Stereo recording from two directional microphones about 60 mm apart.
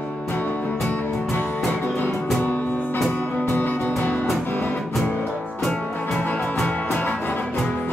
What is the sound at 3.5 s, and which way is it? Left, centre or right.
Music, left.